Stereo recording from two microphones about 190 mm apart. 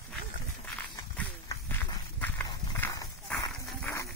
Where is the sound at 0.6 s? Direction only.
10° left (ahead or behind).